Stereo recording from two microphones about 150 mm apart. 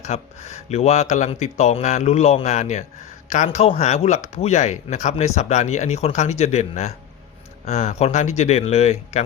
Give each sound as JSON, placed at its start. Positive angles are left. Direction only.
{"t": 0.0, "sound": "speech", "side_deg": 50}